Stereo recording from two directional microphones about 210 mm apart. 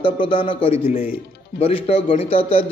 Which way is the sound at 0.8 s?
45° left (ahead or behind).